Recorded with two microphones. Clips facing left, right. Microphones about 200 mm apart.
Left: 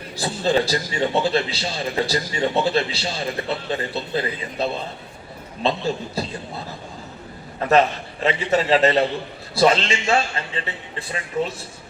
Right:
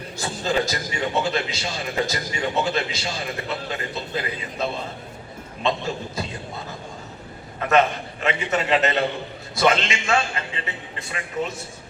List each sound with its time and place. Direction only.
0.2 s a man's voice: 30° left (ahead or behind)
5.6 s a man's voice: 35° left (ahead or behind)
7.7 s a man's voice: 35° left (ahead or behind)